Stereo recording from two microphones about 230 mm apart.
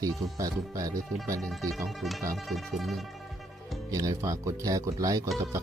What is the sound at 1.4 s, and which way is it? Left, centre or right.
Music, centre.